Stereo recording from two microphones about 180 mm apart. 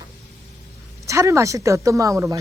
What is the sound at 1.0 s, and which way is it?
Speech, 15° right (ahead or behind).